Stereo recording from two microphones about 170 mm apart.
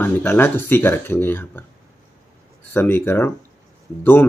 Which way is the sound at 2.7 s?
15° left (ahead or behind).